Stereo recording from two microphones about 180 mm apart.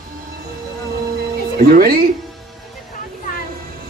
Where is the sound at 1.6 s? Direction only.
55° right (ahead or behind).